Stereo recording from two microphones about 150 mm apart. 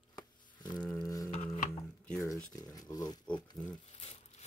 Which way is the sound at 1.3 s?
55° left (ahead or behind).